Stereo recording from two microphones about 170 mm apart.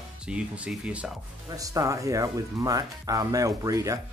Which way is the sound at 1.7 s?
20° right (ahead or behind).